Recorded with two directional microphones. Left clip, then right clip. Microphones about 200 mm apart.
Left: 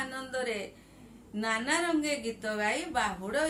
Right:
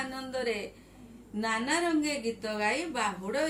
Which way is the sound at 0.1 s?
15° left (ahead or behind).